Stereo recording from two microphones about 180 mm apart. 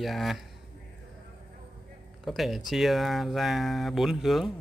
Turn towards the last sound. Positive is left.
turn(degrees=0)  # may be behind; listen again after turning